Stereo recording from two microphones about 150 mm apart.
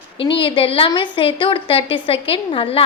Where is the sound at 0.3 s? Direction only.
35° left (ahead or behind).